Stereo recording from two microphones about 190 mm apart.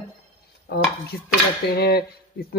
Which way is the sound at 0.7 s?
55° left (ahead or behind).